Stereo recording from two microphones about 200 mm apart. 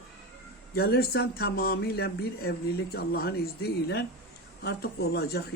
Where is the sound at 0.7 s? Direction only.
50° left (ahead or behind).